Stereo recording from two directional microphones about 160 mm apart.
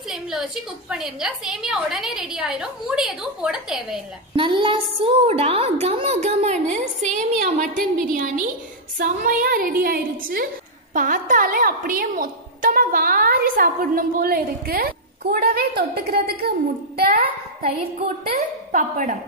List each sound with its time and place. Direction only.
0.1 s a woman's voice: 5° right (ahead or behind)
4.4 s a woman's voice: 30° right (ahead or behind); by 17.3 s 75° right (ahead or behind)
18.3 s a woman's voice: 55° right (ahead or behind)